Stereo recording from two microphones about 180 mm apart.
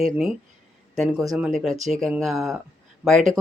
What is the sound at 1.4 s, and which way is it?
Speech, centre (ahead or behind).